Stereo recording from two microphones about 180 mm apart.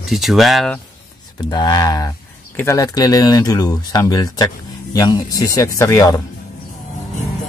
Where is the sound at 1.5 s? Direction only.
20° left (ahead or behind).